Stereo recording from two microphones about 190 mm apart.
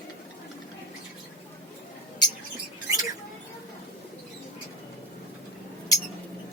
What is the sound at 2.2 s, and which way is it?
Mouse, 20° left (ahead or behind).